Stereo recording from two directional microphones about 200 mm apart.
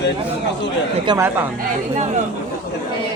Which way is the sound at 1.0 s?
15° right (ahead or behind).